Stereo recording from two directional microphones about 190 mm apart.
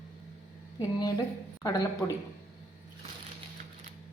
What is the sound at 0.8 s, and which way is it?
A woman's voice, 20° left (ahead or behind).